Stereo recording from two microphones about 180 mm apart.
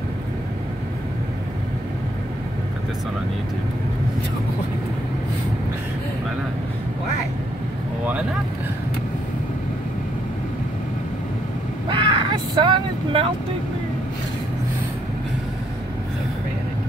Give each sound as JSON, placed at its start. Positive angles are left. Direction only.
{"t": 11.9, "sound": "vehicle", "side_deg": -25}